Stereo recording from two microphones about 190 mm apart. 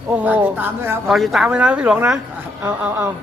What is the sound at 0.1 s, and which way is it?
Speech, 10° right (ahead or behind).